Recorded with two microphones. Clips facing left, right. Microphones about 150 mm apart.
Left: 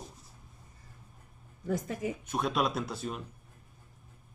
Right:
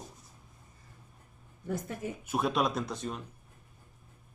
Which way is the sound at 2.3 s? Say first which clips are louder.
Right 2 dB; centre (ahead or behind).